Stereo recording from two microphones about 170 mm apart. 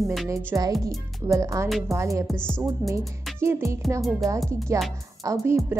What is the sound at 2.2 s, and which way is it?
Speech, 5° left (ahead or behind).